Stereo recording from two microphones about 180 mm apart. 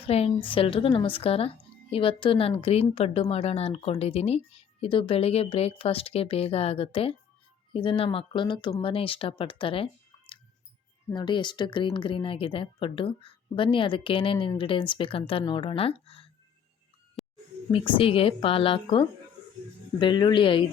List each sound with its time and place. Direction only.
0.1 s a woman's voice: 35° left (ahead or behind)
17.2 s a sound: centre (ahead or behind)
17.7 s a woman's voice: 30° left (ahead or behind)